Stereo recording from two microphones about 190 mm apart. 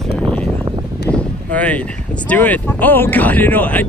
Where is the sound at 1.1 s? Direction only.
5° left (ahead or behind).